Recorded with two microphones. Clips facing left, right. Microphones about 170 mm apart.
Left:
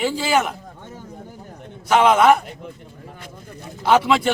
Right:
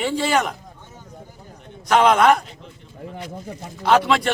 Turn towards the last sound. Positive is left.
turn(degrees=5)  # may be behind; listen again after turning